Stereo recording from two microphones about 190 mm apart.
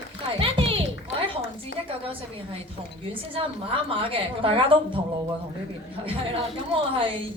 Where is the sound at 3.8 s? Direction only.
30° right (ahead or behind).